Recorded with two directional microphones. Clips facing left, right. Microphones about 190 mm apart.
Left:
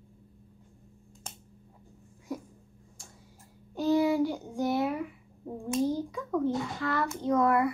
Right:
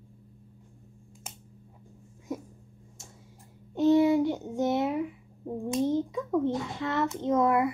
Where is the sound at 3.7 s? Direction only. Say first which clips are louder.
Right 4 dB; 20° right (ahead or behind).